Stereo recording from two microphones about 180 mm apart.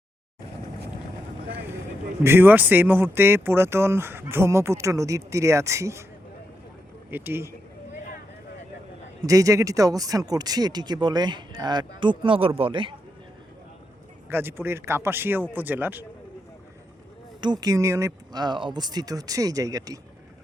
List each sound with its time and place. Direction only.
2.2 s speech: 10° right (ahead or behind)
7.1 s speech: 10° right (ahead or behind)
9.2 s speech: 20° right (ahead or behind)
14.3 s speech: 10° right (ahead or behind)
17.4 s speech: 25° right (ahead or behind)